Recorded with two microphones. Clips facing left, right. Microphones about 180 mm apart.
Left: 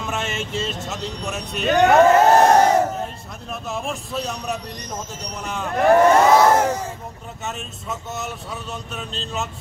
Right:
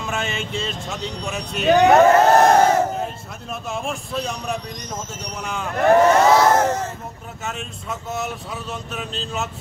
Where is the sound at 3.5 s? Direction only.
Centre (ahead or behind).